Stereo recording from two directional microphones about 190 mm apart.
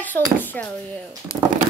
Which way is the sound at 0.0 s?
10° left (ahead or behind).